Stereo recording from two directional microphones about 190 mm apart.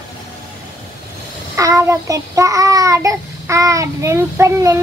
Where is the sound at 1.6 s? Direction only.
15° right (ahead or behind).